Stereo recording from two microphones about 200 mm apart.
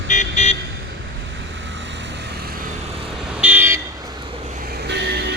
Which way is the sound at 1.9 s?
60° right (ahead or behind).